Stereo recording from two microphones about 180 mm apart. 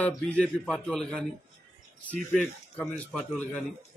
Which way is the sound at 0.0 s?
5° left (ahead or behind).